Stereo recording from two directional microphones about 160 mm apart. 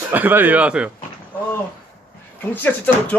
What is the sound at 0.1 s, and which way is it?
Speech, 10° right (ahead or behind).